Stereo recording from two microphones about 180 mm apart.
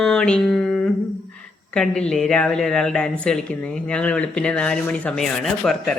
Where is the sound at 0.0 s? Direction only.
5° left (ahead or behind).